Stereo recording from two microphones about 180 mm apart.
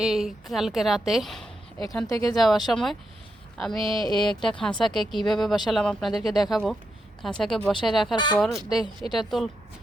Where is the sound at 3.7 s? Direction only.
25° right (ahead or behind).